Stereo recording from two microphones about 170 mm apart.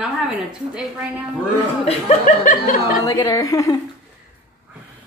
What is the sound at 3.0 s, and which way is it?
Speech, 20° left (ahead or behind).